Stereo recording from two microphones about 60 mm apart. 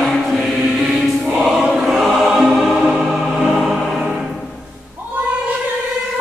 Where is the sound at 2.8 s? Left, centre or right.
Centre.